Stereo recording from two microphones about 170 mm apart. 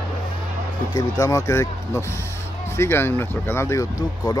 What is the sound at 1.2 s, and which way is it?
Speech, 20° left (ahead or behind).